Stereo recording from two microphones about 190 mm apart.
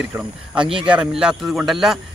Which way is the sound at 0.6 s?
25° right (ahead or behind).